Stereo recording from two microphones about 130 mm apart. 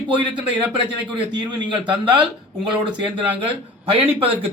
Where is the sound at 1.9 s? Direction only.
35° right (ahead or behind).